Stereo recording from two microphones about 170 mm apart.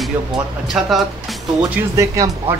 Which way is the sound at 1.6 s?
20° right (ahead or behind).